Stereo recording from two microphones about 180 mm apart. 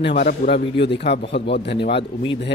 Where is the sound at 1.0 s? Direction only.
70° left (ahead or behind).